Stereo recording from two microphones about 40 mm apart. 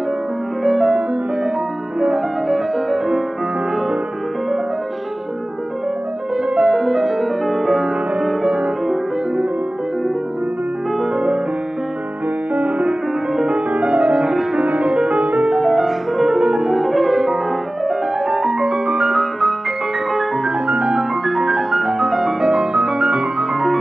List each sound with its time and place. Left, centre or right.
0.7 s music: centre
2.1 s music: centre
6.3 s music: centre
8.5 s music: right
12.5 s music: right
15.6 s music: centre
16.4 s music: centre
16.7 s music: centre
18.7 s music: centre
19.0 s music: centre
20.6 s music: right
21.3 s music: centre
23.5 s music: centre